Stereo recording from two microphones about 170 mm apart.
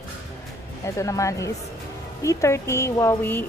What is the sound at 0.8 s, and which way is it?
Speech, 20° left (ahead or behind).